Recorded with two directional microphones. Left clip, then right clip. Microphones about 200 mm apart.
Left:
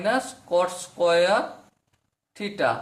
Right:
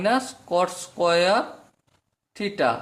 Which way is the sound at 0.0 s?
35° right (ahead or behind).